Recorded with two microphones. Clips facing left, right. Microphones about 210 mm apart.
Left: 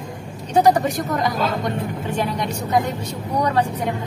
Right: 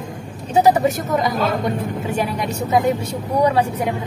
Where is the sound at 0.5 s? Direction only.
5° right (ahead or behind).